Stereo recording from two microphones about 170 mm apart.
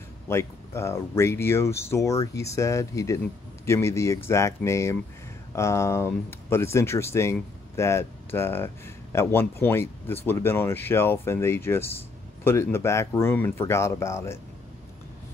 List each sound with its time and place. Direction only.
0.3 s speech: 15° left (ahead or behind)